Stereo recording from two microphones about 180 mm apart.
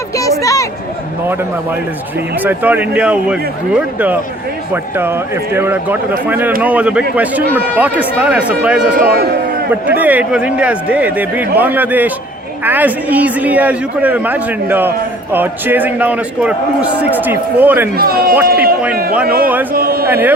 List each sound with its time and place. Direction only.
0.2 s a sound: 20° left (ahead or behind)
2.4 s speech: 10° right (ahead or behind)
9.8 s speech: 10° right (ahead or behind)
17.9 s a man's voice: 55° right (ahead or behind)
19.7 s a sound: 55° right (ahead or behind)
20.1 s speech: 10° right (ahead or behind)